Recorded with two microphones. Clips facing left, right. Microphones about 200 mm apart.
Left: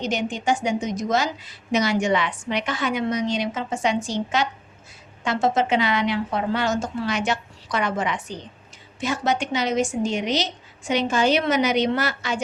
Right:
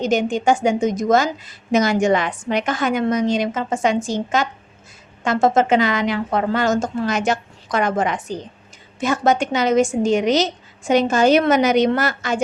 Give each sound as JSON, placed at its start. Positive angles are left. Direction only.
{"t": 0.0, "sound": "a woman's voice", "side_deg": -50}